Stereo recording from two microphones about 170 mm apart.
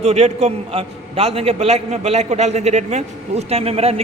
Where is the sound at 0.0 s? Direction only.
40° right (ahead or behind).